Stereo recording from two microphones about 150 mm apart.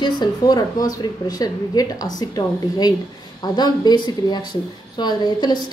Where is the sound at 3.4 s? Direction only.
25° left (ahead or behind).